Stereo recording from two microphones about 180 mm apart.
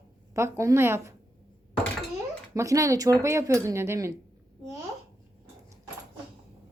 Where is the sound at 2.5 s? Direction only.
20° right (ahead or behind).